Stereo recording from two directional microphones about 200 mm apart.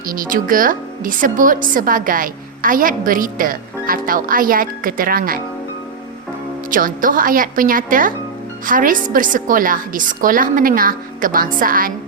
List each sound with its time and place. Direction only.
0.1 s a woman's voice: 45° right (ahead or behind)
6.7 s a woman's voice: 45° right (ahead or behind)